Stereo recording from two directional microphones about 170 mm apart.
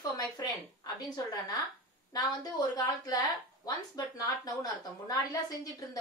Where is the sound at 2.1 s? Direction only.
25° left (ahead or behind).